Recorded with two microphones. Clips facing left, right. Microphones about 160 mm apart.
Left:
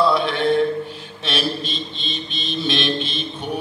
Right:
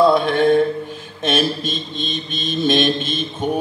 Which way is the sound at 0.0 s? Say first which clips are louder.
Right 4 dB; 50° right (ahead or behind).